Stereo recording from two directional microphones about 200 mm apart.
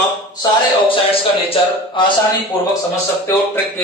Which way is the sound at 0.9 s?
25° left (ahead or behind).